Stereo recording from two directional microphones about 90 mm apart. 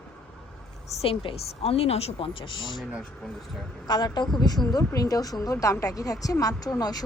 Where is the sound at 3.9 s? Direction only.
50° left (ahead or behind).